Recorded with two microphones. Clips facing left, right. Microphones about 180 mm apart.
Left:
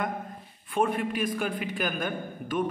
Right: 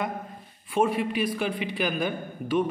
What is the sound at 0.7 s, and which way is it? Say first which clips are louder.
A man's voice: right 2 dB; 5° right (ahead or behind).